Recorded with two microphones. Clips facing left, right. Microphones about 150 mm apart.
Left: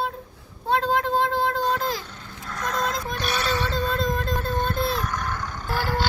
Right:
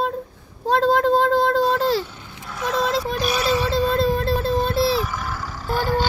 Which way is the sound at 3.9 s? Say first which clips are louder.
Right 6 dB; 30° right (ahead or behind).